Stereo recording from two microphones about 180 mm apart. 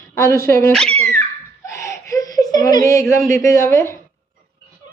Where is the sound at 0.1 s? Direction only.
15° left (ahead or behind).